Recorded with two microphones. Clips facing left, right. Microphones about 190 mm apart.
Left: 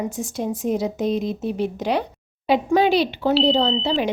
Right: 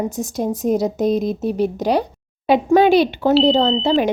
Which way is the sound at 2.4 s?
50° right (ahead or behind).